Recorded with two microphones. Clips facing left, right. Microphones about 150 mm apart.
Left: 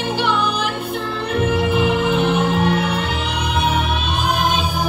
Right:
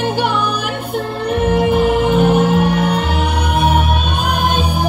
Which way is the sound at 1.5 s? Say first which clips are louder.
Right 5 dB; 50° right (ahead or behind).